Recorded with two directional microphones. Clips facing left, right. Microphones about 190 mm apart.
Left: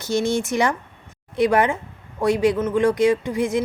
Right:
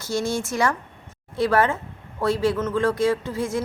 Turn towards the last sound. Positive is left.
turn(degrees=15)  # may be behind; listen again after turning